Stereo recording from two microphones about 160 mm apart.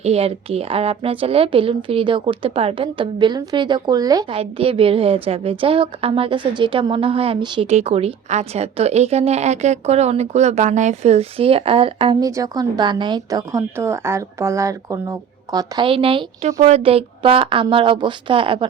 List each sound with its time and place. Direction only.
0.0 s a woman's voice: 40° right (ahead or behind)
4.4 s a woman's voice: 35° right (ahead or behind)
7.7 s a woman's voice: 40° right (ahead or behind)
12.2 s a woman's voice: 20° right (ahead or behind)